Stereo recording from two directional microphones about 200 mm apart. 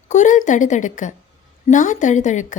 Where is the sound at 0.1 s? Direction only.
40° left (ahead or behind).